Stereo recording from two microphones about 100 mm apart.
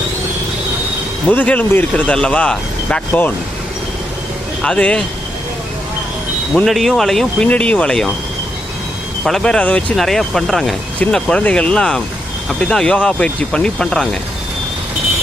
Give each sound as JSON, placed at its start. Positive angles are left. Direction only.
{"t": 1.3, "sound": "speech", "side_deg": 15}
{"t": 4.6, "sound": "speech", "side_deg": 10}
{"t": 6.7, "sound": "speech", "side_deg": 0}
{"t": 9.2, "sound": "speech", "side_deg": 5}